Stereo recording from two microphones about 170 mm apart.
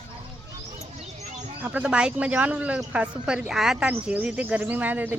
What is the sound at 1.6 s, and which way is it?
A woman's voice, 10° right (ahead or behind).